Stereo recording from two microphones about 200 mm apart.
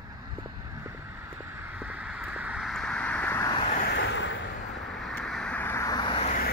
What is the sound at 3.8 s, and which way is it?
Vehicle, 55° left (ahead or behind).